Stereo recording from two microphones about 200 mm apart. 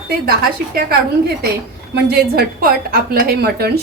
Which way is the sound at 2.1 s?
50° right (ahead or behind).